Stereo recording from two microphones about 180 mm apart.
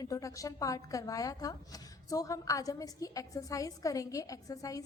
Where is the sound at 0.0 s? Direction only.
20° left (ahead or behind).